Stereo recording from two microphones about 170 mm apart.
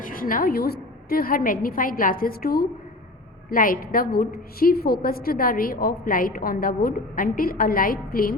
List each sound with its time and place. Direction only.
0.0 s a woman's voice: 55° left (ahead or behind)